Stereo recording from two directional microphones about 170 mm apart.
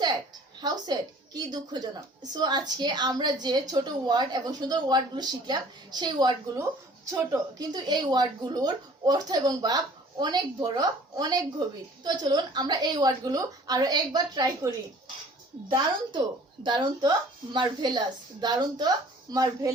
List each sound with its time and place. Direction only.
0.6 s a woman's voice: 25° right (ahead or behind)
16.6 s a woman's voice: 25° right (ahead or behind)